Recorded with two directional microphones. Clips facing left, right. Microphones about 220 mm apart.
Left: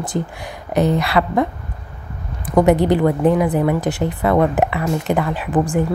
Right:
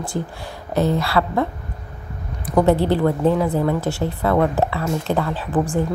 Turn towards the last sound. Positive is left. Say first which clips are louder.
# left 2 dB
turn(degrees=15)  # may be behind; listen again after turning